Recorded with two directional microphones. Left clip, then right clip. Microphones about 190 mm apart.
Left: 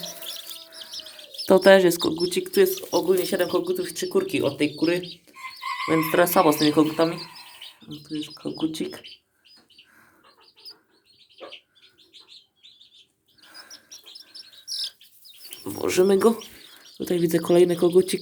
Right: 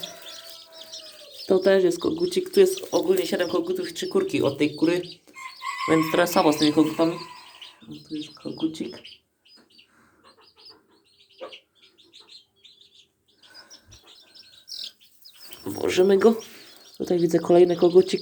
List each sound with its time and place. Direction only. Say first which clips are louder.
0.9 s bird: left 3 dB; 40° left (ahead or behind)
1.5 s speech: left 4 dB; 25° left (ahead or behind)
2.1 s speech: right 1 dB; 5° left (ahead or behind)
6.9 s speech: left 1 dB; 20° left (ahead or behind)
13.4 s bird: left 3 dB; 15° left (ahead or behind)
15.4 s speech: right 1 dB; centre (ahead or behind)